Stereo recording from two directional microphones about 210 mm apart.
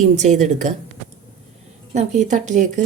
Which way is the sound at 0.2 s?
35° right (ahead or behind).